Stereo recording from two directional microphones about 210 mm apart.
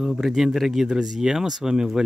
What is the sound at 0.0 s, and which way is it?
Speech, centre (ahead or behind).